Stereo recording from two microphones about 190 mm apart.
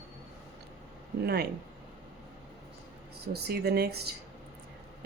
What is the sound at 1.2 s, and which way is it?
Speech, 55° right (ahead or behind).